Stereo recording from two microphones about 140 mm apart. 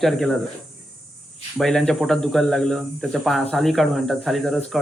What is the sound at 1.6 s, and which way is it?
Speech, 5° left (ahead or behind).